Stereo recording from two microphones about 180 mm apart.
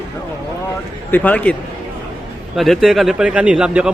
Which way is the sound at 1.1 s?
10° left (ahead or behind).